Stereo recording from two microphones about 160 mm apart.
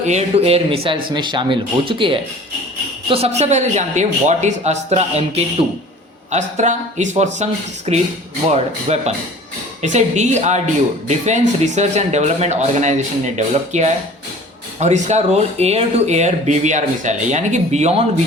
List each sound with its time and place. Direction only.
0.0 s speech: 45° right (ahead or behind)